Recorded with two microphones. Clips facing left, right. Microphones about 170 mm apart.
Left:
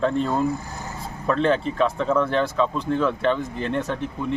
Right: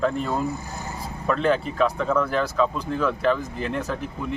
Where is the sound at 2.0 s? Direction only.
25° left (ahead or behind).